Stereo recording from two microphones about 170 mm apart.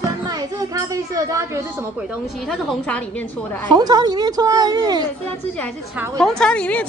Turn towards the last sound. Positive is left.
turn(degrees=5)  # may be behind; listen again after turning